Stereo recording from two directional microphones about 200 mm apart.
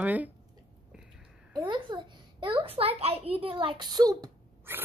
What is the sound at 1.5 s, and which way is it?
A child's voice, 25° right (ahead or behind).